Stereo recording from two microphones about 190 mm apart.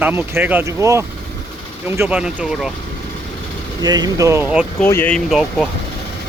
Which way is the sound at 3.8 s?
20° right (ahead or behind).